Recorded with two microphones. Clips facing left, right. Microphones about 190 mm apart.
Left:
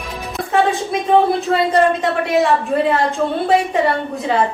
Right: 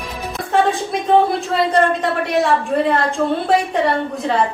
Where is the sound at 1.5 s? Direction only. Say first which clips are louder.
Left 1 dB; centre (ahead or behind).